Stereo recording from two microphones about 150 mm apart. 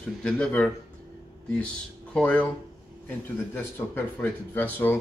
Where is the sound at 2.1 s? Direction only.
10° left (ahead or behind).